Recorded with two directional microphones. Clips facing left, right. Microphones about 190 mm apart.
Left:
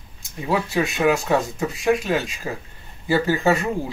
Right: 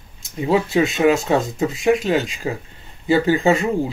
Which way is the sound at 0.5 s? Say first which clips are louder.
Right 5 dB; 20° right (ahead or behind).